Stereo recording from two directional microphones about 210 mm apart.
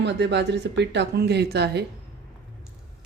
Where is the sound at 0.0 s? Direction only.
55° right (ahead or behind).